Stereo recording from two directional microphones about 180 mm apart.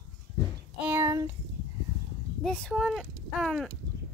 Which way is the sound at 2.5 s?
5° left (ahead or behind).